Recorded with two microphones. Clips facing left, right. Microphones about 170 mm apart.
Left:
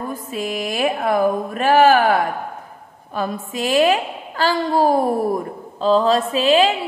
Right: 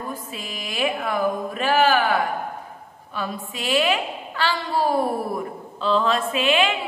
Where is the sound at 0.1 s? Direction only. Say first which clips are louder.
Left 8 dB; 45° left (ahead or behind).